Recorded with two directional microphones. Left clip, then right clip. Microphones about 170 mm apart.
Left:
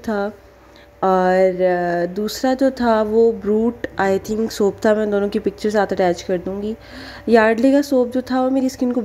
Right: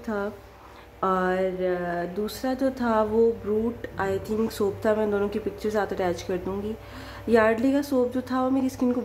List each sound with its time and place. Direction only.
0.0 s a woman's voice: 30° left (ahead or behind)